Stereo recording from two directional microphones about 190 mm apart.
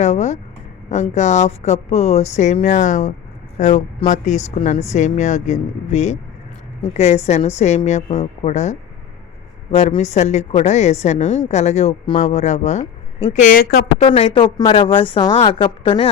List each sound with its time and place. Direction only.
0.0 s a woman's voice: 35° left (ahead or behind); by 13.8 s 50° left (ahead or behind)
14.0 s a woman's voice: 30° left (ahead or behind)